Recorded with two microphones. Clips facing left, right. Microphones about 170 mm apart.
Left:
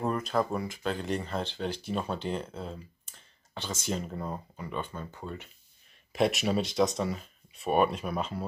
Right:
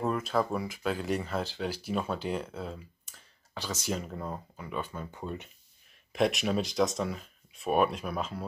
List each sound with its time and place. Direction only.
0.0 s speech: centre (ahead or behind)
3.8 s speech: centre (ahead or behind)
5.1 s speech: 20° right (ahead or behind)
6.1 s speech: centre (ahead or behind)